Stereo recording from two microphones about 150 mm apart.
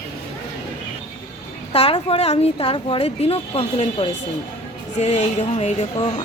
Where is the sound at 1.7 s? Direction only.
40° left (ahead or behind).